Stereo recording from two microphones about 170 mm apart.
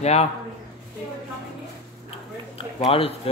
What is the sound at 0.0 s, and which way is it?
Speech, 40° left (ahead or behind).